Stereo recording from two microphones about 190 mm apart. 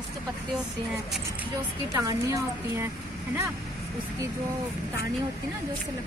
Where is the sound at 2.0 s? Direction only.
15° right (ahead or behind).